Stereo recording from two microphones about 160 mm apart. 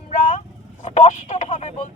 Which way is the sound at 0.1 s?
50° left (ahead or behind).